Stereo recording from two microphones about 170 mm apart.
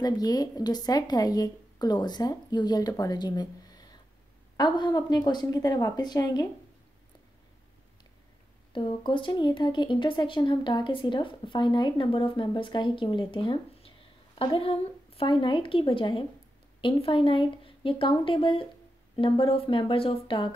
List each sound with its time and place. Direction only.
0.0 s speech: 25° left (ahead or behind)
8.7 s a woman's voice: 30° left (ahead or behind)